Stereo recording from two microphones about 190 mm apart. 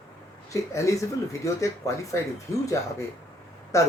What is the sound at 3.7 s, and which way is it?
Speech, 15° left (ahead or behind).